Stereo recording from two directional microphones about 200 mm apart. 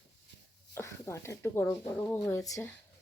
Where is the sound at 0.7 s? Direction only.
15° left (ahead or behind).